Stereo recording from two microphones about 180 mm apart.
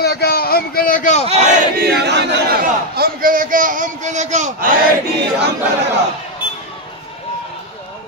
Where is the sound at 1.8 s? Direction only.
70° right (ahead or behind); by 4.7 s 45° right (ahead or behind).